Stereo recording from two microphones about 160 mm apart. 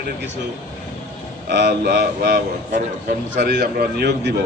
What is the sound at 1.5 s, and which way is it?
Speech, 90° right.